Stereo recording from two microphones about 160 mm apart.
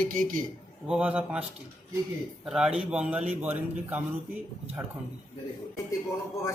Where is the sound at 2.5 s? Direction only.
5° right (ahead or behind).